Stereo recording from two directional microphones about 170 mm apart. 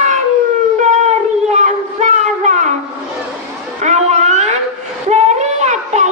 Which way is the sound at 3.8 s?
40° right (ahead or behind).